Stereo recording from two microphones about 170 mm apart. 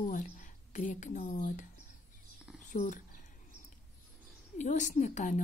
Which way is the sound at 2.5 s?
50° left (ahead or behind).